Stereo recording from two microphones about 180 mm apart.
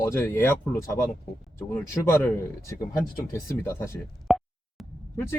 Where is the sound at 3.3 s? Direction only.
15° left (ahead or behind).